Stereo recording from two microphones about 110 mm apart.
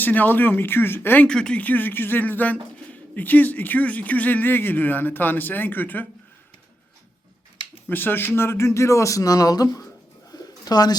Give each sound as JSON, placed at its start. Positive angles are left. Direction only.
{"t": 0.0, "sound": "speech", "side_deg": 15}
{"t": 7.9, "sound": "speech", "side_deg": 20}
{"t": 10.3, "sound": "bird", "side_deg": 35}